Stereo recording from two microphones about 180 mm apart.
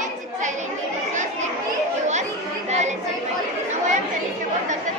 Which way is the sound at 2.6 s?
40° right (ahead or behind).